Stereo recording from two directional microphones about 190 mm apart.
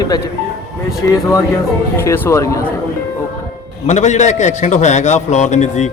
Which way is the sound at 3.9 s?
40° left (ahead or behind).